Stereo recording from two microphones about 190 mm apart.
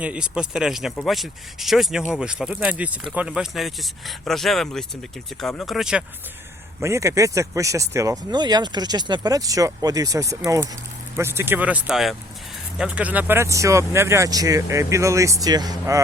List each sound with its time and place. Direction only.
0.0 s speech: 5° right (ahead or behind)
6.7 s speech: 15° right (ahead or behind)